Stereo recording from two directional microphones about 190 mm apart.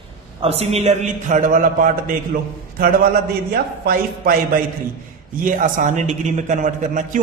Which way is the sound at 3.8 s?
50° right (ahead or behind).